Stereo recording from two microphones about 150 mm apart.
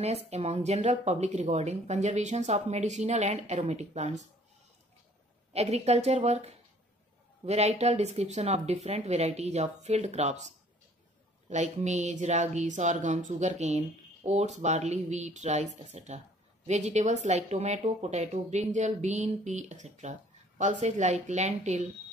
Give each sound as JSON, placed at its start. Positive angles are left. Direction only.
{"t": 0.0, "sound": "speech", "side_deg": -45}
{"t": 5.5, "sound": "speech", "side_deg": -45}